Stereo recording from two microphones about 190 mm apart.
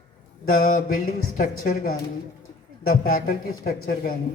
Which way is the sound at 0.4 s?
45° left (ahead or behind).